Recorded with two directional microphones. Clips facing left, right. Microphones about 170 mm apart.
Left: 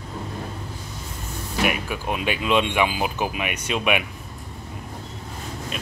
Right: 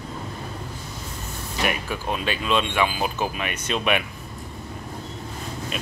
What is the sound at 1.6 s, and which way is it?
Speech, 10° left (ahead or behind).